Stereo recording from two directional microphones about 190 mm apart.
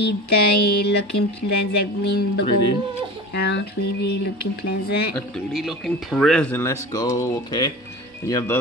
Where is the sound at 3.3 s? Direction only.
60° left (ahead or behind).